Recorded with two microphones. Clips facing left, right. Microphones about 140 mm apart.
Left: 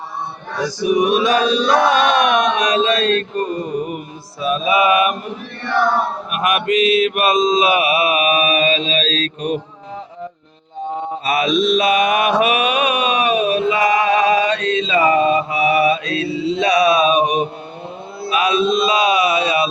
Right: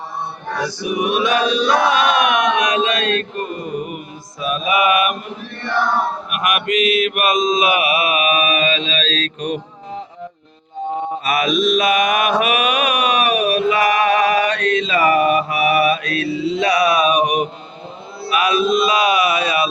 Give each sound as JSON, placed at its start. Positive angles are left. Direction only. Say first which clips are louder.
{"t": 0.8, "sound": "mantra", "louder": "left 5 dB", "side_deg": 40}
{"t": 1.6, "sound": "a sound", "louder": "left 1 dB", "side_deg": 40}
{"t": 6.3, "sound": "mantra", "louder": "left 3 dB", "side_deg": 30}
{"t": 11.3, "sound": "mantra", "louder": "left 1 dB", "side_deg": 30}